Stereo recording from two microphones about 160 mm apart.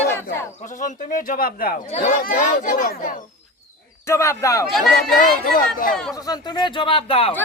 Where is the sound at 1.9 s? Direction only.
40° left (ahead or behind).